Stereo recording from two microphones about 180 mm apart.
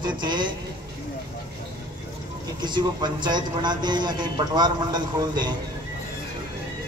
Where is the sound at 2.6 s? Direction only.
25° right (ahead or behind).